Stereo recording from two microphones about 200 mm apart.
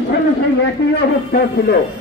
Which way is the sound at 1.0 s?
55° left (ahead or behind).